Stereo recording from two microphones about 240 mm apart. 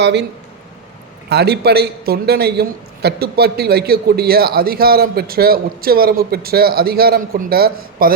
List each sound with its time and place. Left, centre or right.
0.0 s speech: right
1.3 s a man's voice: right